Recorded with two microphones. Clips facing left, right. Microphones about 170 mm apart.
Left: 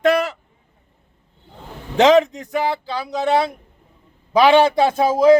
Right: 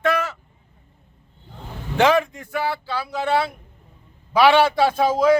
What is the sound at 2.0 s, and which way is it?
Speech, 20° left (ahead or behind).